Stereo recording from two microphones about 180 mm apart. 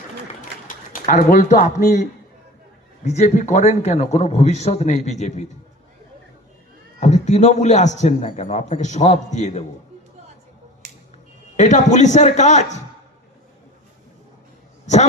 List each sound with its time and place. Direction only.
0.7 s a man's voice: 50° left (ahead or behind)
7.0 s a man's voice: 40° left (ahead or behind)
11.5 s a man's voice: 40° left (ahead or behind)